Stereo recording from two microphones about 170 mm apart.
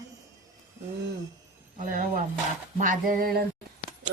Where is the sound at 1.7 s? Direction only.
55° right (ahead or behind).